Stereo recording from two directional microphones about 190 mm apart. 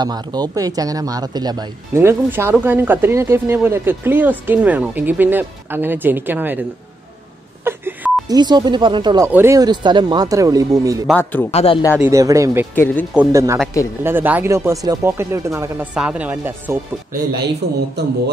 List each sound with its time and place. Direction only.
0.0 s a man's voice: 20° right (ahead or behind)
7.6 s beep: 10° right (ahead or behind)
8.4 s speech: 20° right (ahead or behind)
11.1 s a man's voice: 10° left (ahead or behind)
11.5 s speech: 30° left (ahead or behind)
12.0 s a man's voice: 15° right (ahead or behind)
12.7 s a man's voice: 10° left (ahead or behind)
13.1 s a man's voice: 10° right (ahead or behind)
18.0 s a man's voice: 60° right (ahead or behind)